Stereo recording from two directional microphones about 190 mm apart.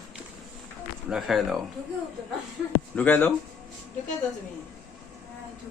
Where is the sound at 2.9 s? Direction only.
10° left (ahead or behind).